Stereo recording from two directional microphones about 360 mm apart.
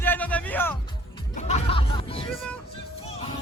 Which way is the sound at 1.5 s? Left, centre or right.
Centre.